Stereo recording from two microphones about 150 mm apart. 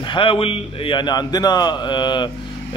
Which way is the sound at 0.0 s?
35° left (ahead or behind).